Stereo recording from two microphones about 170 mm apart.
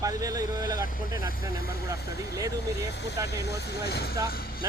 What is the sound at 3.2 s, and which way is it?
Speech, 75° left (ahead or behind).